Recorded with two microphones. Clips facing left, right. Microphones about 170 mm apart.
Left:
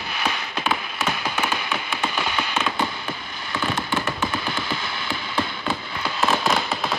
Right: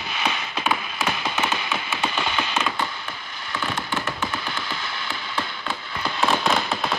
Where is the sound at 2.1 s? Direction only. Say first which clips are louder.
Even; 5° left (ahead or behind).